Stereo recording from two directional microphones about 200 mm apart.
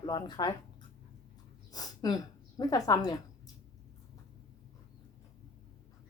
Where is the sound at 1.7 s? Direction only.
20° left (ahead or behind).